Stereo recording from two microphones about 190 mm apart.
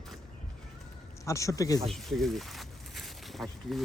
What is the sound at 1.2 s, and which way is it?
Speech, 15° left (ahead or behind).